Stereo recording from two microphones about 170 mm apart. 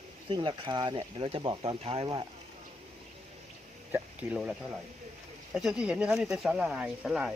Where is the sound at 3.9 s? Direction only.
10° right (ahead or behind).